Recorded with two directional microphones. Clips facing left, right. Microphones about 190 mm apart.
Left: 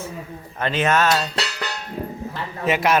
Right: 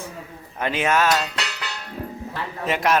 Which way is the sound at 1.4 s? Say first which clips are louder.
Left 4 dB; 40° left (ahead or behind).